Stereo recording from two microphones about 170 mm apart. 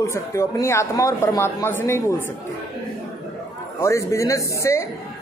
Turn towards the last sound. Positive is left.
turn(degrees=15)  # may be behind; listen again after turning